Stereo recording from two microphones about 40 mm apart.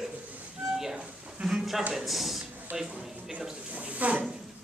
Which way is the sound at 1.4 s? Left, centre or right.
Centre.